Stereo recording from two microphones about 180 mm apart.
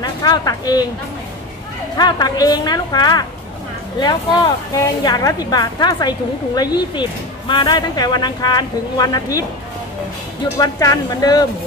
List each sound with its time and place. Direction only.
0.0 s a woman's voice: 20° left (ahead or behind)
2.0 s a woman's voice: 25° left (ahead or behind)
4.7 s a woman's voice: 20° left (ahead or behind)
10.6 s a woman's voice: 20° left (ahead or behind)